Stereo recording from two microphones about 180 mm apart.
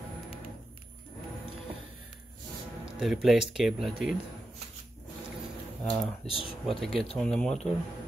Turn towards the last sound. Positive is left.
turn(degrees=5)  # may be behind; listen again after turning